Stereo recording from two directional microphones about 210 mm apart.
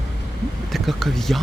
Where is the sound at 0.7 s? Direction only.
Centre (ahead or behind).